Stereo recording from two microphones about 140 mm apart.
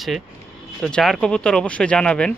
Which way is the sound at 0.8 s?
5° left (ahead or behind).